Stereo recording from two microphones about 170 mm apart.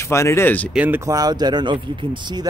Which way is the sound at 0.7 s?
10° right (ahead or behind).